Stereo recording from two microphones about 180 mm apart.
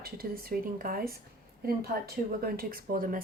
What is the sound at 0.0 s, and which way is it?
Speech, 55° right (ahead or behind).